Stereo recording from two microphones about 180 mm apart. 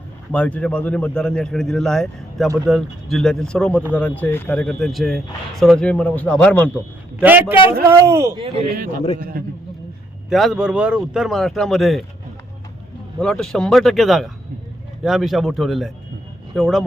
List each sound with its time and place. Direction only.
0.3 s speech: 5° left (ahead or behind)
7.2 s speech: 10° right (ahead or behind)
9.4 s a man's voice: 55° right (ahead or behind)
10.2 s speech: centre (ahead or behind)
13.1 s speech: 5° left (ahead or behind)